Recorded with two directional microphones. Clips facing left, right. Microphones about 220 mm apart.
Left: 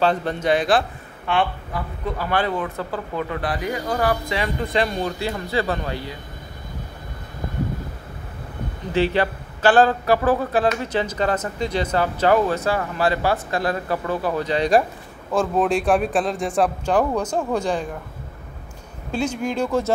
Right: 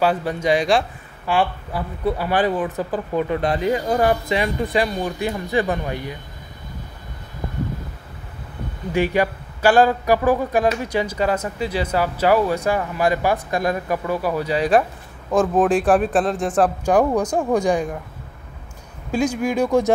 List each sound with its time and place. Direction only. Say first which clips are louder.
0.0 s speech: right 1 dB; 10° right (ahead or behind)
0.5 s speech: right 1 dB; centre (ahead or behind)
1.2 s speech: right 2 dB; 10° right (ahead or behind)
8.9 s speech: right 1 dB; 10° right (ahead or behind)
15.9 s speech: right 2 dB; centre (ahead or behind)
19.1 s speech: right 3 dB; 10° right (ahead or behind)